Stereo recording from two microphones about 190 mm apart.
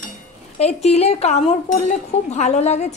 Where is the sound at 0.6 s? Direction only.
35° left (ahead or behind).